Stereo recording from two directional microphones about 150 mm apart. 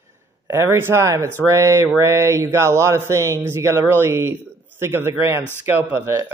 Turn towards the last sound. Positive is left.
turn(degrees=-15)  # may be behind; listen again after turning